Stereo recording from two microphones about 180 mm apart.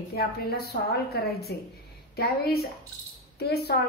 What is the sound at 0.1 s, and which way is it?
A woman's voice, 60° left (ahead or behind).